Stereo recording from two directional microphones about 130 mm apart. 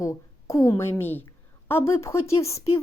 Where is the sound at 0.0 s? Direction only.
25° left (ahead or behind).